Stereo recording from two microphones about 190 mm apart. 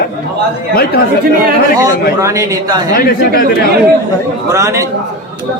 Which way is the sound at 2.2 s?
15° right (ahead or behind).